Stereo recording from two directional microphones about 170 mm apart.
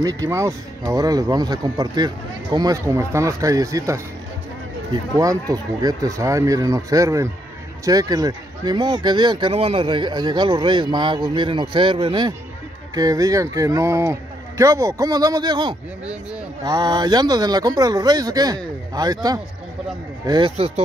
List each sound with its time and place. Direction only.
0.0 s speech: 20° right (ahead or behind)
5.1 s speech: 20° right (ahead or behind); by 20.8 s 35° right (ahead or behind)